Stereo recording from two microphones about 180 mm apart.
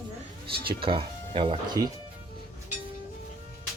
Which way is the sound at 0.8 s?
30° right (ahead or behind).